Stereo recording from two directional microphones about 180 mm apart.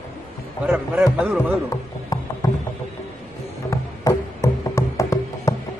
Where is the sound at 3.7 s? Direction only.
15° left (ahead or behind).